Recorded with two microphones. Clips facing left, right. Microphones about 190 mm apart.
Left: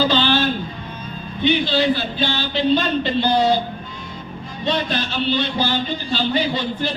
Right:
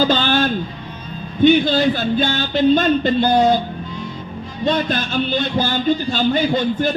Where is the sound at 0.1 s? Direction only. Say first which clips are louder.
Right 1 dB; 45° right (ahead or behind).